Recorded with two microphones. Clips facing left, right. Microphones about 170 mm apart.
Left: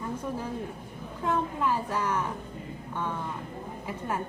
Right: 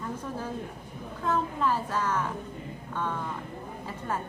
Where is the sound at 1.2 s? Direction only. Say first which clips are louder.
Even; 15° left (ahead or behind).